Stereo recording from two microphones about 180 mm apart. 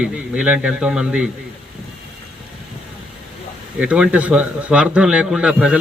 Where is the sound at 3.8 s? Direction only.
5° right (ahead or behind).